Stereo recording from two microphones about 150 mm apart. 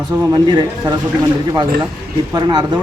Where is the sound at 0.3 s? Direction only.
30° right (ahead or behind).